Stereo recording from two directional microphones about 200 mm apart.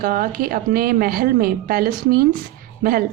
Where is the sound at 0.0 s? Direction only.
45° right (ahead or behind).